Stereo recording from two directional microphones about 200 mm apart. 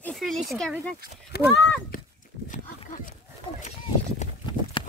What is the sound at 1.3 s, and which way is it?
Speech, 50° left (ahead or behind).